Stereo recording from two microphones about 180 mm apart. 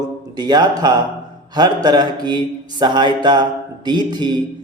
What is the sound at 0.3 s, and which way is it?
Speech, 25° right (ahead or behind).